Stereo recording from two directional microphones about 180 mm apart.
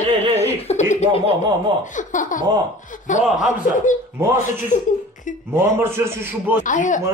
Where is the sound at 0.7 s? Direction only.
40° left (ahead or behind).